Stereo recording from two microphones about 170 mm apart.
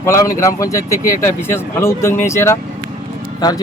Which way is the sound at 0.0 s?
15° left (ahead or behind).